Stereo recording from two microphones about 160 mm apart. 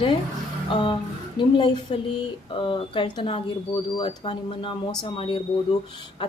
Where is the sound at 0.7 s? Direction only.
30° left (ahead or behind).